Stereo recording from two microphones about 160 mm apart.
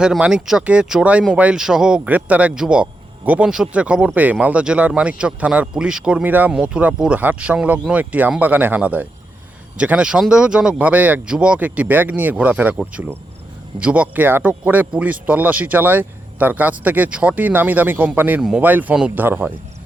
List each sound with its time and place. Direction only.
0.0 s speech: 5° right (ahead or behind)